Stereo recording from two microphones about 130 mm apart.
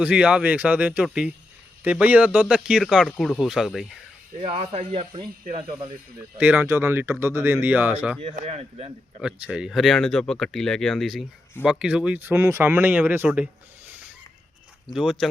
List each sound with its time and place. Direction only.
0.0 s speech: 10° right (ahead or behind)
3.0 s speech: 5° left (ahead or behind)
3.4 s speech: 5° right (ahead or behind)
4.4 s speech: 50° right (ahead or behind)
6.3 s speech: 10° right (ahead or behind)
8.4 s speech: 55° right (ahead or behind)
9.2 s speech: 5° right (ahead or behind)
14.8 s speech: centre (ahead or behind)